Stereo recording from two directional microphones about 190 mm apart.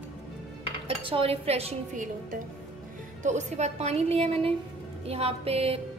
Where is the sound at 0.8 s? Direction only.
30° right (ahead or behind).